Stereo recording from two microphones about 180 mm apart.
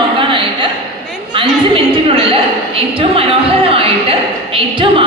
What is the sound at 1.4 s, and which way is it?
A woman's voice, 30° right (ahead or behind).